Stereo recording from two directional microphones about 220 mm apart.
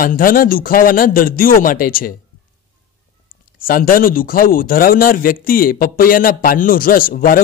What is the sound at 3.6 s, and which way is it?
Speech, 40° left (ahead or behind).